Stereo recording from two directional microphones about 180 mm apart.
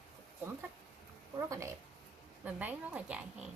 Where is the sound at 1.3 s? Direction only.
15° right (ahead or behind).